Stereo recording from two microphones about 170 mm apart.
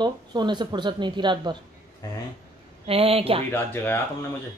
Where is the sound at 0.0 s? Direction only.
25° right (ahead or behind).